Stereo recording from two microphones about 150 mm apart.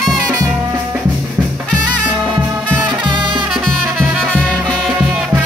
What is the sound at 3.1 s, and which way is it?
Music, 30° right (ahead or behind).